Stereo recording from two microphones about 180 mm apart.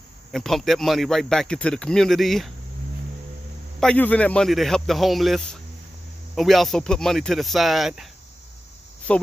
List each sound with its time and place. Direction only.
0.3 s speech: centre (ahead or behind)
3.8 s speech: 10° left (ahead or behind)